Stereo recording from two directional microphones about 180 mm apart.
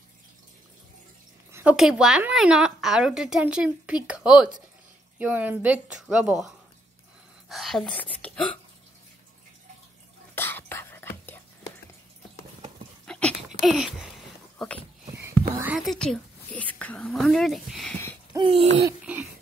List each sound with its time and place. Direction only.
1.5 s a woman's voice: 10° right (ahead or behind); by 8.5 s 10° left (ahead or behind)
10.3 s whispering: 10° left (ahead or behind)
13.0 s a sound: 5° left (ahead or behind)
14.6 s dog: centre (ahead or behind)
15.6 s a woman's voice: 5° right (ahead or behind)
18.3 s a sound: 30° right (ahead or behind)